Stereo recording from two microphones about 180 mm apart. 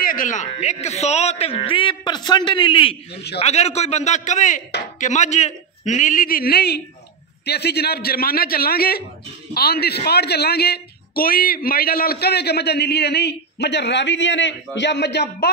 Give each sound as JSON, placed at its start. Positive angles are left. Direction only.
{"t": 0.0, "sound": "a man's voice", "side_deg": 50}